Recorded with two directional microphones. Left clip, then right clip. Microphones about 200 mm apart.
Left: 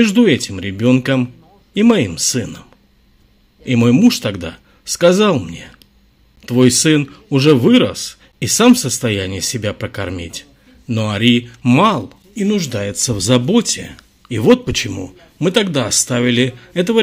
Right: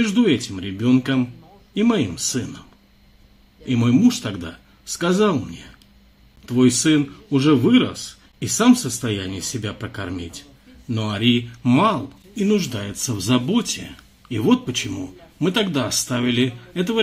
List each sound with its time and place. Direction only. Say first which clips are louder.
0.0 s speech: left 6 dB; 40° left (ahead or behind)
3.6 s speech: left 6 dB; 40° left (ahead or behind)